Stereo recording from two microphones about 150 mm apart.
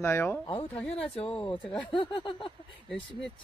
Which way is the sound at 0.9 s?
40° left (ahead or behind).